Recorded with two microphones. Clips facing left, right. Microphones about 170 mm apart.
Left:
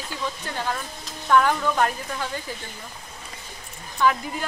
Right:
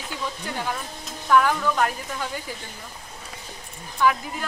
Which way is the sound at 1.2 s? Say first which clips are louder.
Even; centre (ahead or behind).